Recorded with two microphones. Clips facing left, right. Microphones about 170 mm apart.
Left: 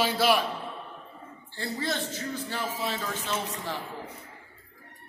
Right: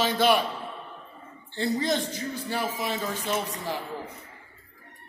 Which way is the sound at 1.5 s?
20° right (ahead or behind).